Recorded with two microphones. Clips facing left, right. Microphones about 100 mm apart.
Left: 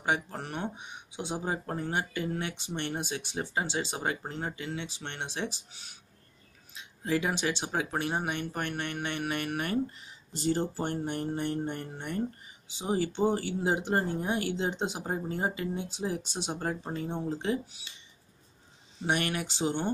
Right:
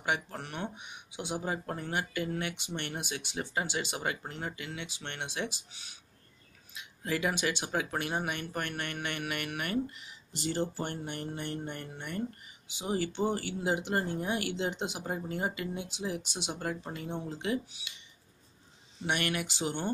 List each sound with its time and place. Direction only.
0.0 s speech: 35° left (ahead or behind)
6.7 s speech: 30° left (ahead or behind)
19.0 s speech: 30° left (ahead or behind)